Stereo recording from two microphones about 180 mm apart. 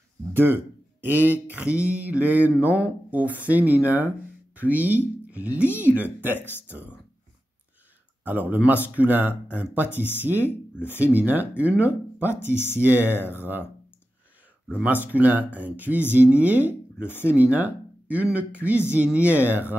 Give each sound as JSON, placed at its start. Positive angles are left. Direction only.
{"t": 0.3, "sound": "mantra", "side_deg": -10}
{"t": 8.2, "sound": "mantra", "side_deg": -10}
{"t": 14.8, "sound": "mantra", "side_deg": -10}